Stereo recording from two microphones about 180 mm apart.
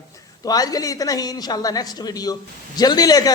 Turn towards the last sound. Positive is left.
turn(degrees=20)  # may be behind; listen again after turning